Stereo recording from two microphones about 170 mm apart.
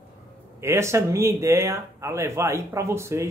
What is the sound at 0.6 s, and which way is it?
Speech, 15° right (ahead or behind).